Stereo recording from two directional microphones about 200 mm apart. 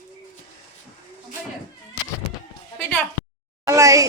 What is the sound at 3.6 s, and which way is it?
Speech, 15° right (ahead or behind).